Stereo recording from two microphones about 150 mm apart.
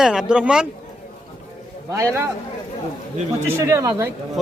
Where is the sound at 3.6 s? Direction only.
20° right (ahead or behind).